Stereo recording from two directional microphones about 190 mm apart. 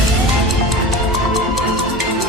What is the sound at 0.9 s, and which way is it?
Music, centre (ahead or behind).